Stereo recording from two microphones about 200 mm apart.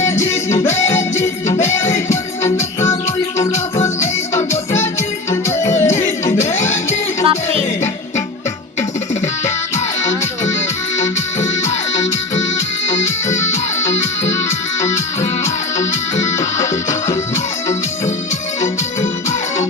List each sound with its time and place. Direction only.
0.0 s music: 15° left (ahead or behind)
6.6 s music: 35° left (ahead or behind)
13.7 s music: 35° left (ahead or behind)
15.4 s music: 15° left (ahead or behind)
16.1 s music: 35° left (ahead or behind)
17.1 s music: 15° left (ahead or behind)